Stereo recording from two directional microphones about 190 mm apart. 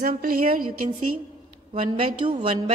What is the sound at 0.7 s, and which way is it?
Speech, 30° right (ahead or behind).